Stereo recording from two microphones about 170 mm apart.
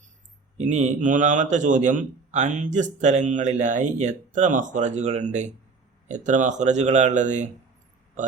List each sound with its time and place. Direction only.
0.5 s a man's voice: 45° right (ahead or behind)